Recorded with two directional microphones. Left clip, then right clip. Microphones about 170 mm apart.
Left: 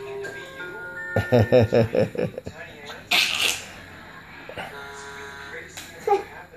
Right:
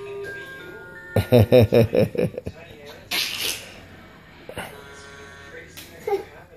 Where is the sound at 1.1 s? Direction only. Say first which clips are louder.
Right 2 dB; 40° right (ahead or behind).